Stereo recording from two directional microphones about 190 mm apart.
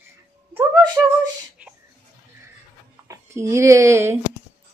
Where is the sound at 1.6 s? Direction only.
5° right (ahead or behind).